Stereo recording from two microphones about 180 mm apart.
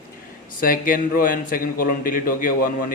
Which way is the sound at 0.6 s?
50° left (ahead or behind).